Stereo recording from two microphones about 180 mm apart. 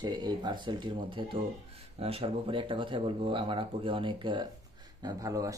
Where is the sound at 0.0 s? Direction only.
25° right (ahead or behind).